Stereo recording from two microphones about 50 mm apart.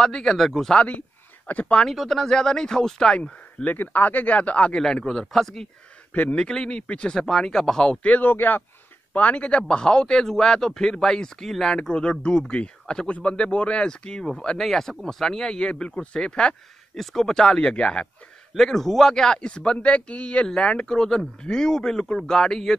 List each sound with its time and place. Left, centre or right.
0.0 s a man's voice: centre
0.7 s speech: left
1.9 s a man's voice: centre
3.6 s speech: left
4.7 s a man's voice: centre
6.1 s speech: left
6.4 s a man's voice: centre
7.2 s a man's voice: centre
7.9 s speech: left
8.2 s speech: left
9.1 s a man's voice: left
16.9 s a man's voice: centre; by 18.0 s left
18.6 s a man's voice: centre